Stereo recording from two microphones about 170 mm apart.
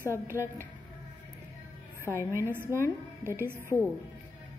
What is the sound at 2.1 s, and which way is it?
Speech, 15° left (ahead or behind).